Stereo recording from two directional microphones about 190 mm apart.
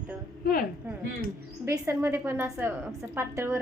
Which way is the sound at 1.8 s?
15° right (ahead or behind).